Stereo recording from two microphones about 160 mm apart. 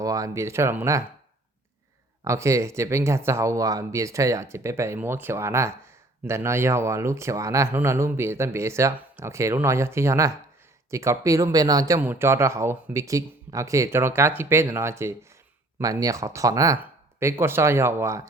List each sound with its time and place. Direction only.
0.0 s speech: 20° right (ahead or behind)
2.2 s speech: 20° right (ahead or behind)